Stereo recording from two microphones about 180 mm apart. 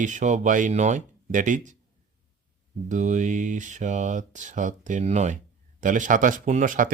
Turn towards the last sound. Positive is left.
turn(degrees=-50)  # may be behind; listen again after turning